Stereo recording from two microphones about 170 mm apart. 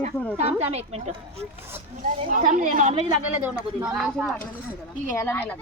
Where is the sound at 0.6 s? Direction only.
40° right (ahead or behind).